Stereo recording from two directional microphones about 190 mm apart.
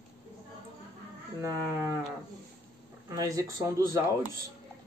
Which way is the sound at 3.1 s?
15° right (ahead or behind).